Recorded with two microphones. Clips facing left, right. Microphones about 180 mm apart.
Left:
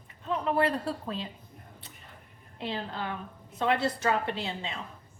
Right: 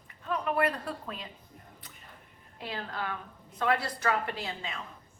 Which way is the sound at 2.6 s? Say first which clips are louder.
Left 2 dB; 25° left (ahead or behind).